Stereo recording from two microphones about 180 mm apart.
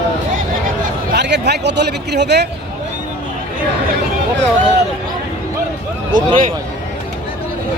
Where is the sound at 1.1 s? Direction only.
70° right (ahead or behind).